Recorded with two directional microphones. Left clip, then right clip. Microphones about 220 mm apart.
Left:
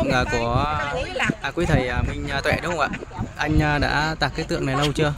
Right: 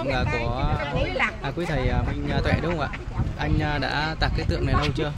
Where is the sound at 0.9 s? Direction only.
50° left (ahead or behind).